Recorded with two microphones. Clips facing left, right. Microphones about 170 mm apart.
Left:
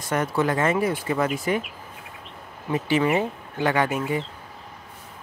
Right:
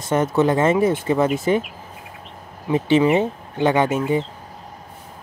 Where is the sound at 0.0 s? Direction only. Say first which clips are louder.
Right 5 dB; 25° right (ahead or behind).